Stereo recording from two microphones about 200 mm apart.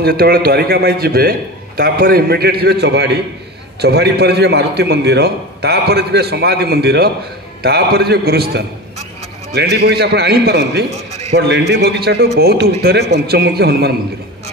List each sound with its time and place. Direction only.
0.0 s a man's voice: 50° right (ahead or behind)